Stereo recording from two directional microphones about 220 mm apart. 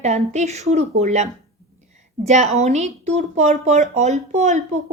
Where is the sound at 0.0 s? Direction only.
30° right (ahead or behind).